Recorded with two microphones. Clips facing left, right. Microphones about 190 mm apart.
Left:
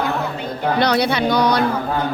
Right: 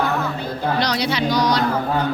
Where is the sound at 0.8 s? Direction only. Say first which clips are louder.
Left 7 dB; 55° left (ahead or behind).